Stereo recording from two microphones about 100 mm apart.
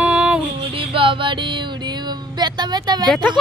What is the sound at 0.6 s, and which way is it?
Music, 60° right (ahead or behind).